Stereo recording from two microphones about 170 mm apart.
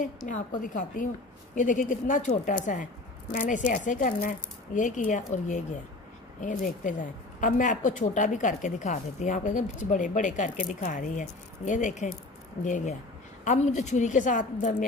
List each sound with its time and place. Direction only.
0.6 s speech: 50° left (ahead or behind)